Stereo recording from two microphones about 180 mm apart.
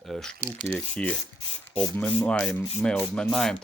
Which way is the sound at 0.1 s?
5° left (ahead or behind).